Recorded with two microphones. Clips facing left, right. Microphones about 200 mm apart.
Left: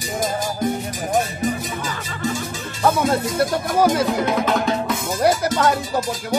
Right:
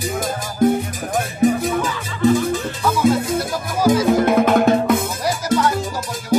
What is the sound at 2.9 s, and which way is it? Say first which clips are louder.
Music: right 3 dB; 60° left (ahead or behind).